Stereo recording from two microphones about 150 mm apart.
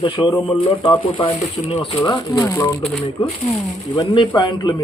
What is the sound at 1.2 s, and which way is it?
Speech, 40° left (ahead or behind).